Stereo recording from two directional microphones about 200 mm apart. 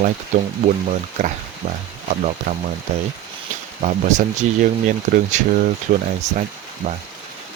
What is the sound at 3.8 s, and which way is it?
Speech, 35° right (ahead or behind).